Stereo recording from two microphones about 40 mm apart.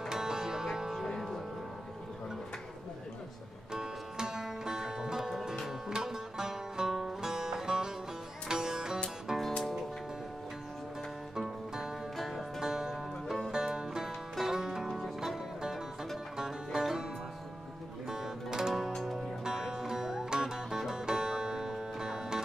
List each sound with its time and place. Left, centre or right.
0.1 s music: centre
1.0 s music: centre
3.7 s music: centre
11.3 s music: centre
16.3 s music: centre